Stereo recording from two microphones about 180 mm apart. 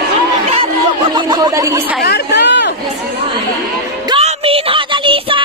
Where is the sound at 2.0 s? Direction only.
70° left (ahead or behind).